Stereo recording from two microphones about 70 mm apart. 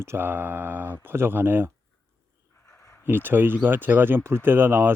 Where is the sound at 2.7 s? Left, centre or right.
Left.